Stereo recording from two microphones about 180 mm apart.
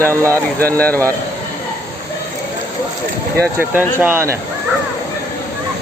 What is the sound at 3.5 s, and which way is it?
Speech, 10° right (ahead or behind).